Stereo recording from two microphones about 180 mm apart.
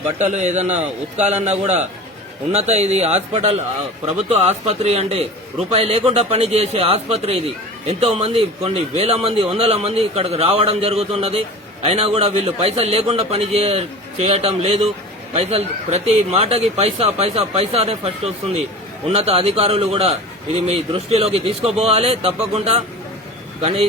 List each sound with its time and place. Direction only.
0.3 s speech: 40° right (ahead or behind)